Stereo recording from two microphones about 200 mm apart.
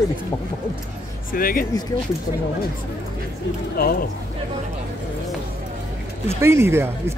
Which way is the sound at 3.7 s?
45° left (ahead or behind).